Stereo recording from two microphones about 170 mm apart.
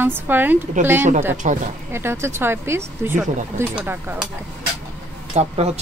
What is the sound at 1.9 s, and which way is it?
Speech, 15° right (ahead or behind).